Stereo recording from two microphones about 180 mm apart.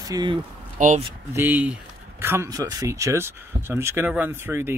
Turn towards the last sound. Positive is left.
turn(degrees=-15)  # may be behind; listen again after turning